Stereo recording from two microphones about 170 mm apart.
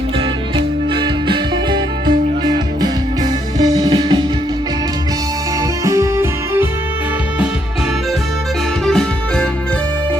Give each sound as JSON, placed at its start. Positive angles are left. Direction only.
{"t": 0.5, "sound": "music", "side_deg": -25}
{"t": 5.8, "sound": "music", "side_deg": -20}
{"t": 8.9, "sound": "music", "side_deg": 5}